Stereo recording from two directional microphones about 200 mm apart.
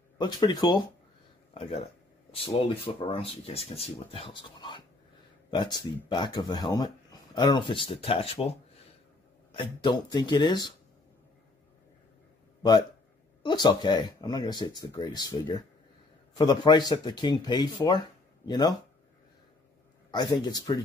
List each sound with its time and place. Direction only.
0.2 s speech: 20° left (ahead or behind)
1.5 s speech: 30° left (ahead or behind)
13.4 s speech: 20° left (ahead or behind)
20.1 s speech: 20° left (ahead or behind)